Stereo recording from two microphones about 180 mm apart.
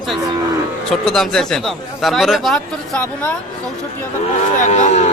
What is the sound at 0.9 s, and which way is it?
Speech, 5° left (ahead or behind).